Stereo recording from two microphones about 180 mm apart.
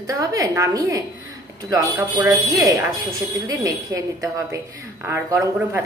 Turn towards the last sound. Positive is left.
turn(degrees=-15)  # may be behind; listen again after turning